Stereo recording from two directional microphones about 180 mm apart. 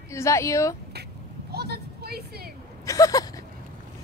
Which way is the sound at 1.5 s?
60° right (ahead or behind).